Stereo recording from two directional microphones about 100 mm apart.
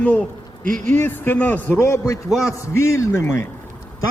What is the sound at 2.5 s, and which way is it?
Speech, 30° left (ahead or behind).